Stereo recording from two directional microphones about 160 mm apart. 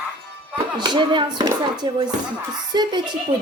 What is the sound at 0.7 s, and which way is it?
Speech, 30° right (ahead or behind).